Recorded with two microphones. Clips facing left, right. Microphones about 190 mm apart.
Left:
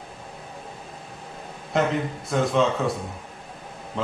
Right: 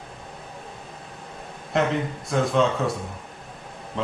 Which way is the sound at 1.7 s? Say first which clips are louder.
Even; centre (ahead or behind).